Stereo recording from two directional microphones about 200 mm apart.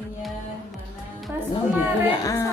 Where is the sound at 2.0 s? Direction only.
15° left (ahead or behind).